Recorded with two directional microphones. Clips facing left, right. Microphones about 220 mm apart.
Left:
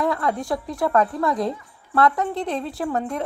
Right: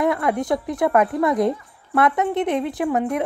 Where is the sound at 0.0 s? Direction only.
20° right (ahead or behind).